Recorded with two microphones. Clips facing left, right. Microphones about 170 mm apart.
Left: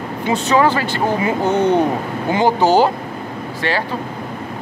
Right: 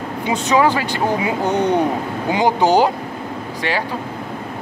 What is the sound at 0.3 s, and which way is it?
Speech, 15° right (ahead or behind).